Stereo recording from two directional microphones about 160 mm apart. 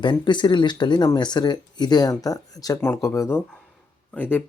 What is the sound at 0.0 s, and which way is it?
Speech, 30° left (ahead or behind).